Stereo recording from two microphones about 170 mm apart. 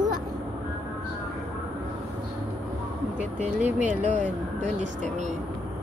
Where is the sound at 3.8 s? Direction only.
45° right (ahead or behind).